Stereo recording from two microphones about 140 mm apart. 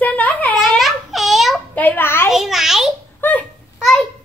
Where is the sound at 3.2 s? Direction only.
15° left (ahead or behind).